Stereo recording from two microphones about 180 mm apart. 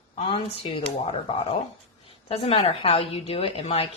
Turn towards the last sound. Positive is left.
turn(degrees=35)  # may be behind; listen again after turning